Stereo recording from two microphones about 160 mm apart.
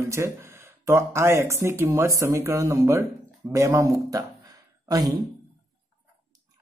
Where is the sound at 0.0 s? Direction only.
15° right (ahead or behind).